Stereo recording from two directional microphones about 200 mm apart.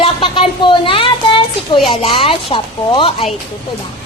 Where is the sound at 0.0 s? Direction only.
25° left (ahead or behind).